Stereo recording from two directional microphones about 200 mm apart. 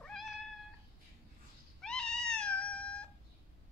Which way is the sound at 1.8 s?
5° left (ahead or behind).